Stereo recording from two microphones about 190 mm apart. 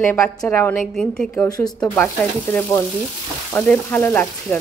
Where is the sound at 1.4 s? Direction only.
20° left (ahead or behind).